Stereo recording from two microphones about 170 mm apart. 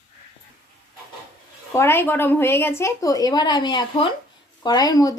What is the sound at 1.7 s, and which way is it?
A woman's voice, 15° left (ahead or behind).